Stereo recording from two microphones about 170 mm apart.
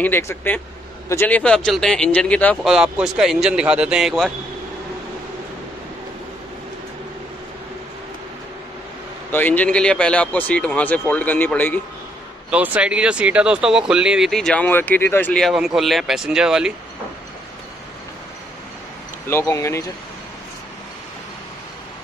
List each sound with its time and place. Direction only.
0.0 s speech: 15° left (ahead or behind)
9.3 s speech: 10° left (ahead or behind)
12.4 s speech: 10° right (ahead or behind)
19.2 s speech: 15° left (ahead or behind)